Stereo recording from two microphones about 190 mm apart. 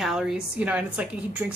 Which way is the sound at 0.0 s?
5° right (ahead or behind).